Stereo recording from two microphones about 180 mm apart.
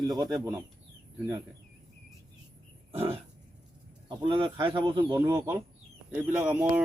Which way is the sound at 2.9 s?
30° right (ahead or behind).